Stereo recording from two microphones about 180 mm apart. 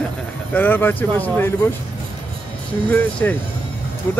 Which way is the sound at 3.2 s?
10° left (ahead or behind).